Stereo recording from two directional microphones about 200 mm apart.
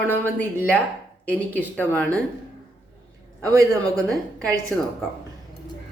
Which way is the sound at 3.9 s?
Centre (ahead or behind).